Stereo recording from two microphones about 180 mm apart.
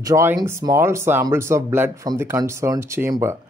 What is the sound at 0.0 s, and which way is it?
Speech, 15° right (ahead or behind).